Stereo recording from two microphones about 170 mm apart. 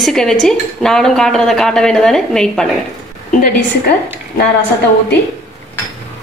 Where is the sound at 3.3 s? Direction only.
55° left (ahead or behind).